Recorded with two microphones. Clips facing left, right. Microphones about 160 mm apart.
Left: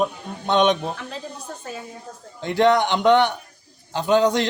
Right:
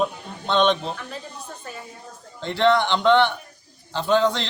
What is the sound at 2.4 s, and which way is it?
Speech, 15° left (ahead or behind).